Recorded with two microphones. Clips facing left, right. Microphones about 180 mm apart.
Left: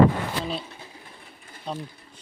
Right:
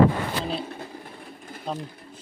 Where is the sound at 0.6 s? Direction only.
55° right (ahead or behind).